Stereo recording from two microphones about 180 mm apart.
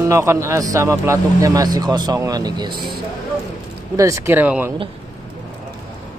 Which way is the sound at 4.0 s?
15° right (ahead or behind).